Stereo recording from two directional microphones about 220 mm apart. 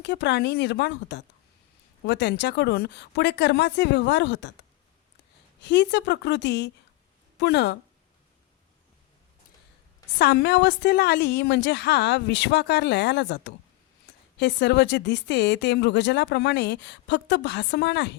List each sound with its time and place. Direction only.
0.0 s speech: 50° left (ahead or behind)
5.6 s speech: 50° left (ahead or behind)
10.2 s speech: 45° left (ahead or behind)